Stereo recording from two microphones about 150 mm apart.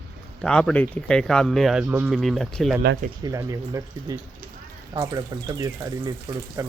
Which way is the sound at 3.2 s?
20° right (ahead or behind).